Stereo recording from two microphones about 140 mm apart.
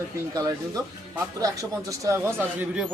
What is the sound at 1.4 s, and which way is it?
Speech, 25° right (ahead or behind).